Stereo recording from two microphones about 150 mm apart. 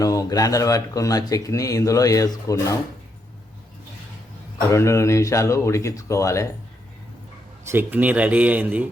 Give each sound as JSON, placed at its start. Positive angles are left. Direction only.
{"t": 0.0, "sound": "speech", "side_deg": 25}
{"t": 4.7, "sound": "speech", "side_deg": 20}
{"t": 7.7, "sound": "speech", "side_deg": -15}